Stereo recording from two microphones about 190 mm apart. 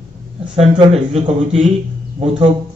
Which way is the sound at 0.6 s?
25° right (ahead or behind).